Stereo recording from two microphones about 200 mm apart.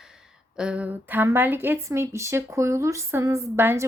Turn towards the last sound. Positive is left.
turn(degrees=-10)  # may be behind; listen again after turning